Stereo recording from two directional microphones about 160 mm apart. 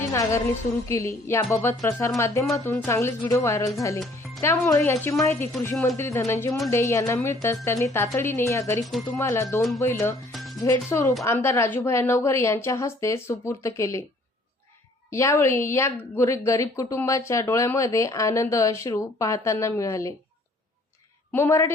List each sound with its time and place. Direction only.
0.1 s a woman's voice: 15° left (ahead or behind)
8.8 s speech: centre (ahead or behind)
9.1 s a woman's voice: 20° left (ahead or behind)
9.6 s speech: centre (ahead or behind)
9.8 s a woman's voice: 15° left (ahead or behind)
10.3 s music: centre (ahead or behind)
10.6 s a woman's voice: 20° left (ahead or behind)
15.1 s speech: 15° left (ahead or behind)
21.3 s a woman's voice: 15° left (ahead or behind)